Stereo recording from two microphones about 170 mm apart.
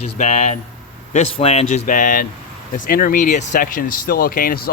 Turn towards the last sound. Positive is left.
turn(degrees=60)  # may be behind; listen again after turning